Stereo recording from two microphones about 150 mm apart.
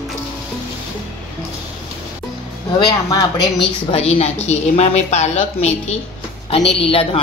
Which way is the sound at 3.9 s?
45° left (ahead or behind).